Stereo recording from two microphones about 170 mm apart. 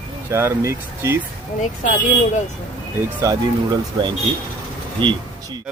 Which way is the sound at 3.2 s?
20° right (ahead or behind).